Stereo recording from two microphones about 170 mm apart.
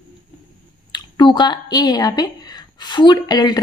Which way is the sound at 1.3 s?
25° left (ahead or behind).